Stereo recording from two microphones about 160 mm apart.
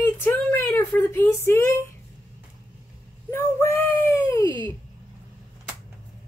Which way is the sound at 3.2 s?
15° left (ahead or behind).